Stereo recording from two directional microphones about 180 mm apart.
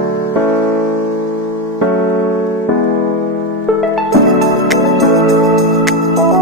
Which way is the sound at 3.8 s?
Centre (ahead or behind).